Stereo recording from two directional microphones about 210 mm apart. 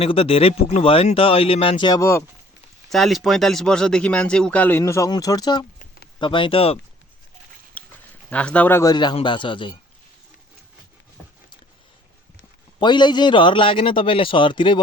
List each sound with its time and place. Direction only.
0.0 s speech: 25° left (ahead or behind)
2.9 s speech: centre (ahead or behind); by 5.6 s 20° left (ahead or behind)
5.8 s a sound: 45° left (ahead or behind)
6.1 s speech: 25° left (ahead or behind)
7.8 s a sound: 5° left (ahead or behind)
8.3 s speech: 5° left (ahead or behind); by 9.7 s 25° left (ahead or behind)
12.8 s speech: 20° left (ahead or behind)